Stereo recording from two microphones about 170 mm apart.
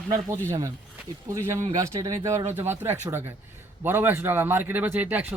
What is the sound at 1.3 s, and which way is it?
A man's voice, 15° right (ahead or behind).